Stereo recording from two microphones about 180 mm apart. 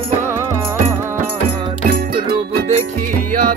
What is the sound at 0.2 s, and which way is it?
Music, 15° right (ahead or behind).